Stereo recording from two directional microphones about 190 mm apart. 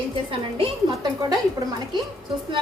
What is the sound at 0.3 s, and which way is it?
A woman's voice, 30° right (ahead or behind).